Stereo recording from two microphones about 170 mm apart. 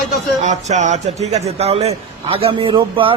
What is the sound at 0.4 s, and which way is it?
A man's voice, 45° right (ahead or behind).